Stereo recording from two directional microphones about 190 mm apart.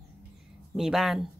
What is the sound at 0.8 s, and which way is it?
Speech, centre (ahead or behind).